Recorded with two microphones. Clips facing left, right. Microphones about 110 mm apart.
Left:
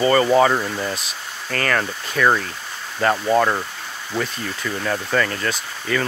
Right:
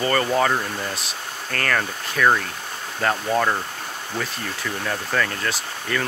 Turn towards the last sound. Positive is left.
turn(degrees=0)  # may be behind; listen again after turning